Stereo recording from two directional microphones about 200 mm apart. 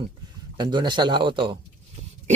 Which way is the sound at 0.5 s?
20° right (ahead or behind).